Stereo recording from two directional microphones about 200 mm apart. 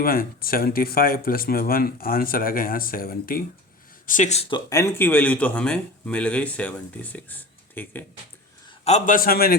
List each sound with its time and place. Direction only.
0.0 s speech: 45° left (ahead or behind); by 8.0 s 10° left (ahead or behind)
8.8 s speech: 35° left (ahead or behind)